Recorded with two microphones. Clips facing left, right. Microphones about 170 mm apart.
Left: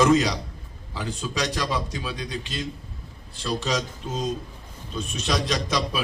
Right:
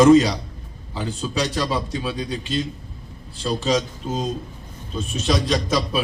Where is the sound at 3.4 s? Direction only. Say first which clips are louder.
Right 5 dB; 40° right (ahead or behind).